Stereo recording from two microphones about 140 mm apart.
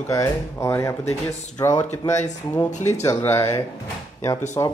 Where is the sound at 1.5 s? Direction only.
30° left (ahead or behind).